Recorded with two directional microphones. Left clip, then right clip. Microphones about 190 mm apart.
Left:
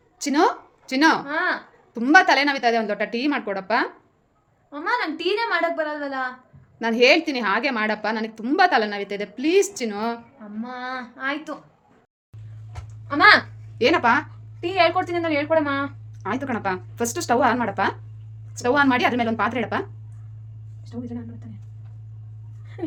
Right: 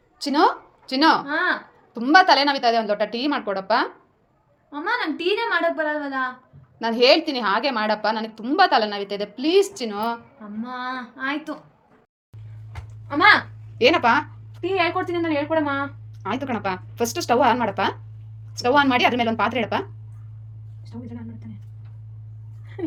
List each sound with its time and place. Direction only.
0.2 s a woman's voice: 15° left (ahead or behind)
1.2 s a woman's voice: centre (ahead or behind)
1.9 s a woman's voice: 15° left (ahead or behind)
13.1 s a woman's voice: 30° left (ahead or behind)
13.7 s a woman's voice: 5° left (ahead or behind)
14.6 s a woman's voice: 35° left (ahead or behind)
16.2 s a woman's voice: 5° left (ahead or behind)